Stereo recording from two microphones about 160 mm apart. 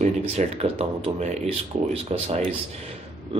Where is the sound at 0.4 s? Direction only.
40° right (ahead or behind).